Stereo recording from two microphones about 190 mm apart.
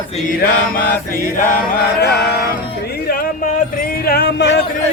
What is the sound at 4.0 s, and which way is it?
Music, 55° left (ahead or behind).